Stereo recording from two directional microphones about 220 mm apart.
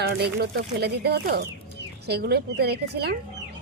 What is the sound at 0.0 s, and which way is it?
Speech, 45° right (ahead or behind).